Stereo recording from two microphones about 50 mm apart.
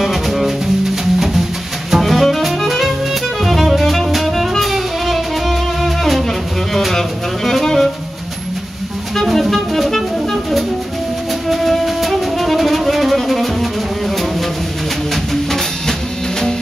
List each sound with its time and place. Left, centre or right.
0.0 s music: centre
1.9 s music: centre
9.1 s music: centre
15.5 s music: centre